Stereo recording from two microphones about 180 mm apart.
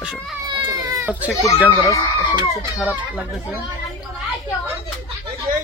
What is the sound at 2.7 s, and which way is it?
Speech, 5° right (ahead or behind).